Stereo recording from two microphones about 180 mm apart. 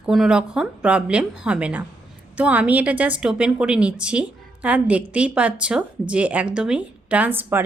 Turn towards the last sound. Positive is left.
turn(degrees=-10)  # may be behind; listen again after turning